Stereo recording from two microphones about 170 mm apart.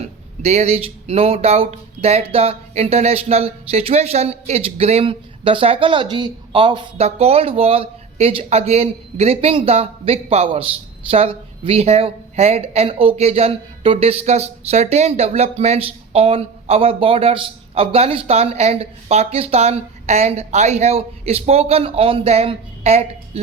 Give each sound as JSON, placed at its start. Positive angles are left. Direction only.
{"t": 0.4, "sound": "speech", "side_deg": -40}